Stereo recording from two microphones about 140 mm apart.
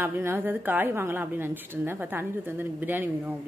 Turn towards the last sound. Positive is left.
turn(degrees=-15)  # may be behind; listen again after turning